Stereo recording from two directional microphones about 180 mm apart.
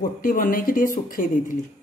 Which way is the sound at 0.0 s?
50° left (ahead or behind).